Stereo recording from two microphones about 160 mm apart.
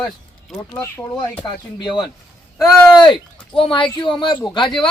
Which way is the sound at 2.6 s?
Centre (ahead or behind).